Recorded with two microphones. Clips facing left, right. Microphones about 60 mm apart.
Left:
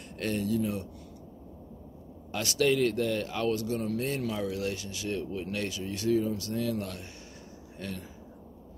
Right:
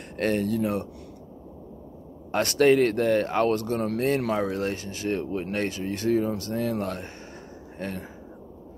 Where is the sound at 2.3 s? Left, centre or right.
Right.